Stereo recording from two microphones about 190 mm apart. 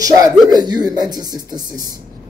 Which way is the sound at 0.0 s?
20° right (ahead or behind).